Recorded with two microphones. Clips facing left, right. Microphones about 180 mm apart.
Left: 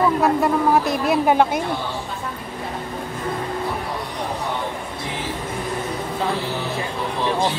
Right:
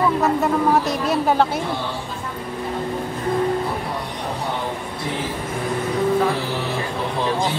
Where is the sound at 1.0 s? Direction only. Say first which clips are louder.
Left 1 dB; 15° left (ahead or behind).